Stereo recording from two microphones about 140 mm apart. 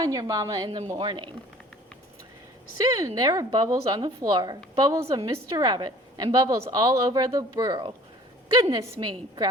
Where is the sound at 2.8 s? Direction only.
25° right (ahead or behind).